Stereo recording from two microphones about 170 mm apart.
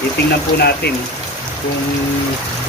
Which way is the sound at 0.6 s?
75° left (ahead or behind).